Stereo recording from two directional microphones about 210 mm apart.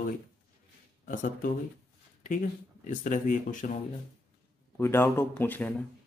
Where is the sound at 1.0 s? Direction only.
40° left (ahead or behind).